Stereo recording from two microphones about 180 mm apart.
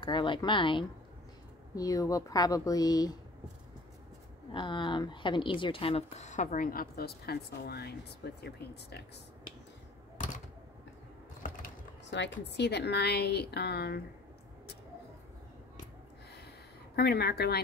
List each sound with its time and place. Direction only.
0.0 s a woman's voice: 25° left (ahead or behind)
4.6 s a woman's voice: 25° left (ahead or behind); by 8.5 s 65° left (ahead or behind)
12.1 s a woman's voice: 75° left (ahead or behind)
16.9 s a woman's voice: 60° left (ahead or behind)